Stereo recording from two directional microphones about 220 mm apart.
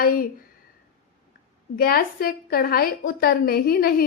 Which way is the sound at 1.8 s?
40° left (ahead or behind).